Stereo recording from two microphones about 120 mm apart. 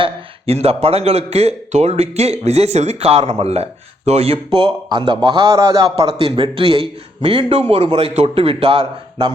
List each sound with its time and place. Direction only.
0.0 s a man's voice: 55° right (ahead or behind)